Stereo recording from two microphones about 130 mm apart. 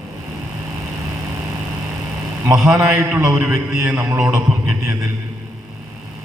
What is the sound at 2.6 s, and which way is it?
Speech, 15° right (ahead or behind).